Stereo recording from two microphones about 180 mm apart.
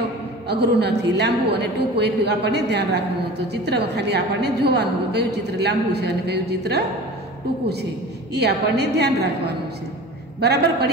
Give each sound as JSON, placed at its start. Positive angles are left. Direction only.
{"t": 0.5, "sound": "a woman's voice", "side_deg": -65}
{"t": 8.4, "sound": "a woman's voice", "side_deg": -65}